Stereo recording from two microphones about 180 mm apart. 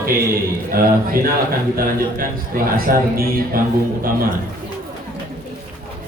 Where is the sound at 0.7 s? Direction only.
55° right (ahead or behind).